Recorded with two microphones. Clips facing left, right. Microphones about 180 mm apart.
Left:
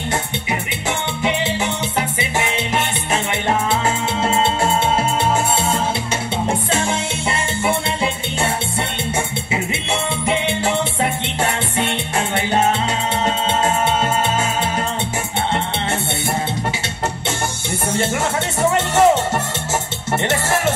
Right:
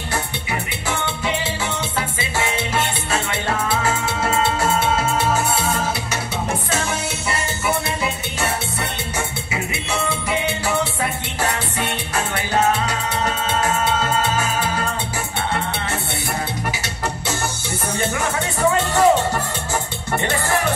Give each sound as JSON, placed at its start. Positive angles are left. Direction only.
{"t": 0.5, "sound": "music", "side_deg": 20}
{"t": 9.5, "sound": "music", "side_deg": 25}
{"t": 12.4, "sound": "music", "side_deg": 25}
{"t": 17.9, "sound": "music", "side_deg": 25}